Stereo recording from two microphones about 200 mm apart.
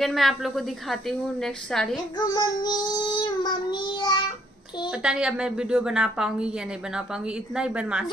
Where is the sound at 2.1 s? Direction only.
20° left (ahead or behind).